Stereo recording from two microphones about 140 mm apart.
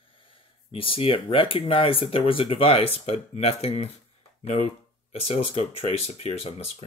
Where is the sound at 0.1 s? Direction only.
40° left (ahead or behind).